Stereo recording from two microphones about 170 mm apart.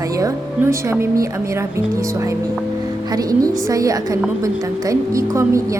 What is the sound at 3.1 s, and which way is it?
A woman's voice, 20° right (ahead or behind).